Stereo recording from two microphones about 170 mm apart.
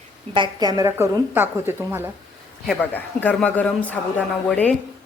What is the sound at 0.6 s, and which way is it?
A woman's voice, 20° right (ahead or behind).